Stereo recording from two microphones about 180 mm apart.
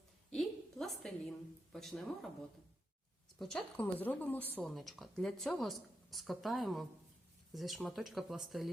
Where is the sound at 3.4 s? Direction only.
5° left (ahead or behind).